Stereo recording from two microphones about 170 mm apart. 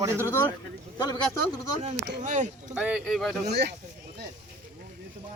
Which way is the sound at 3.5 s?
80° right.